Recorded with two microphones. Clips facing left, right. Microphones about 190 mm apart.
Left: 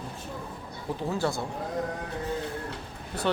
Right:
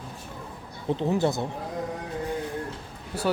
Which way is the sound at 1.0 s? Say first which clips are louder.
Right 4 dB; 20° right (ahead or behind).